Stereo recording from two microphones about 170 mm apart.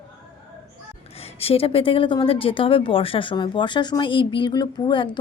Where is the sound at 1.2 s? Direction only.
35° left (ahead or behind).